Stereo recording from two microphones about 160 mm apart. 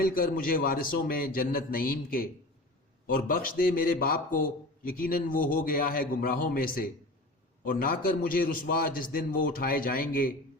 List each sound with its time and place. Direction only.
0.0 s a man's voice: 65° left (ahead or behind)